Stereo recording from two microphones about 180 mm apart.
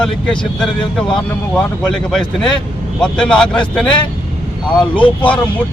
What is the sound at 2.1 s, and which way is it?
Speech, 5° left (ahead or behind).